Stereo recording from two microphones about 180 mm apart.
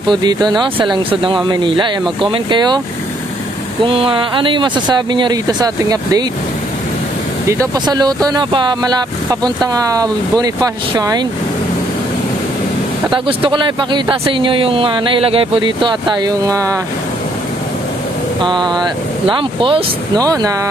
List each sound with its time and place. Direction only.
0.1 s speech: 25° right (ahead or behind)
3.8 s speech: 30° right (ahead or behind)
7.4 s speech: 20° right (ahead or behind)
13.1 s speech: 25° right (ahead or behind)
18.4 s speech: 25° right (ahead or behind)